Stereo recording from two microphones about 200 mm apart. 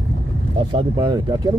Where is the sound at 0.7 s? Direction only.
20° right (ahead or behind).